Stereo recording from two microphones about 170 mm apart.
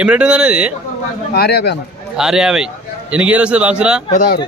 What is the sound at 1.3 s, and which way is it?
Speech, 70° left (ahead or behind).